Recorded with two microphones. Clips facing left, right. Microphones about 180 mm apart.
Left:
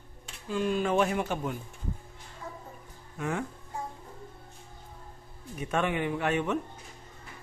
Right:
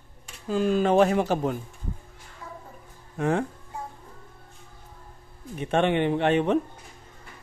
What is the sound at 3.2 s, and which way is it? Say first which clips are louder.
Speech: right 7 dB; 35° right (ahead or behind).